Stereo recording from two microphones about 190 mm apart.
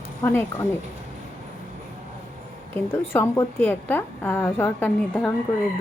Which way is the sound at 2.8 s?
10° left (ahead or behind).